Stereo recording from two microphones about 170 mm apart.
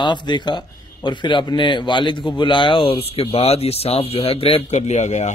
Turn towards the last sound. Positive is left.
turn(degrees=45)  # may be behind; listen again after turning